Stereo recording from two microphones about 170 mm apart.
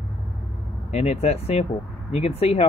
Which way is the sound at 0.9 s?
40° left (ahead or behind).